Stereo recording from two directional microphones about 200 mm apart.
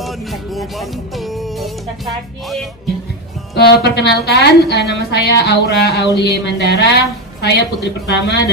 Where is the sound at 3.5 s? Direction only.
55° left (ahead or behind).